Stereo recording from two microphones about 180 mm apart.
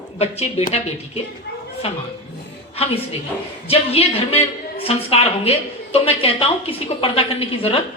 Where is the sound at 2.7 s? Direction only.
35° left (ahead or behind).